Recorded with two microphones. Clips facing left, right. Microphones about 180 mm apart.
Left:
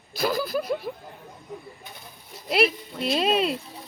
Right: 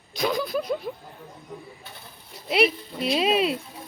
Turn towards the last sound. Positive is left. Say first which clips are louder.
# right 1 dB
turn(degrees=0)  # may be behind; listen again after turning